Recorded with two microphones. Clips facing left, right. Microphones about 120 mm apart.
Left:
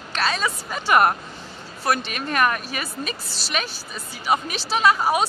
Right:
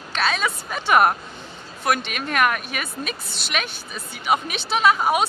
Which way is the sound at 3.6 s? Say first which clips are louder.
Even; centre (ahead or behind).